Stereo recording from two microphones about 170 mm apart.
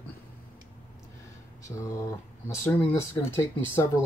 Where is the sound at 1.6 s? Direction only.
20° left (ahead or behind).